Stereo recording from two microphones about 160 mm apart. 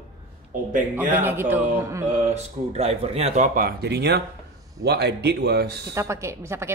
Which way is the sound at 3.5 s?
80° right.